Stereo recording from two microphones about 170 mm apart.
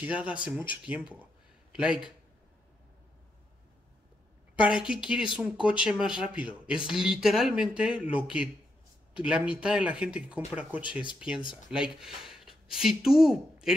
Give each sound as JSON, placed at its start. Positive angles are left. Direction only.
{"t": 0.2, "sound": "speech", "side_deg": -5}
{"t": 0.8, "sound": "a sound", "side_deg": -5}
{"t": 4.6, "sound": "speech", "side_deg": -5}
{"t": 10.8, "sound": "speech", "side_deg": 30}
{"t": 11.1, "sound": "speech", "side_deg": -5}